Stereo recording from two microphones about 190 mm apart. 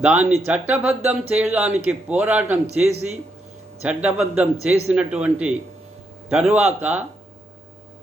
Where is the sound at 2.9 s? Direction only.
35° right (ahead or behind).